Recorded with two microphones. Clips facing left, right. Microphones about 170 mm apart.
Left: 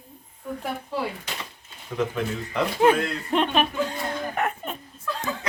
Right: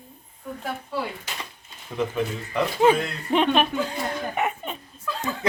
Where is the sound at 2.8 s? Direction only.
Centre (ahead or behind).